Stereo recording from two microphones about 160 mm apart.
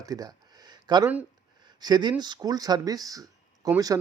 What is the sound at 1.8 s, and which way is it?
Speech, 25° right (ahead or behind).